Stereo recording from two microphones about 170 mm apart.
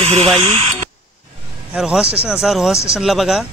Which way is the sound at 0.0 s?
35° right (ahead or behind).